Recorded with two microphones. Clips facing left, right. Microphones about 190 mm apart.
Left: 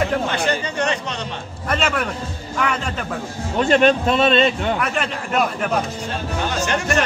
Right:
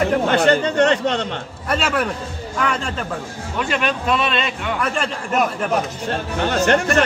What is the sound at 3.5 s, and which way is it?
Speech, 40° left (ahead or behind).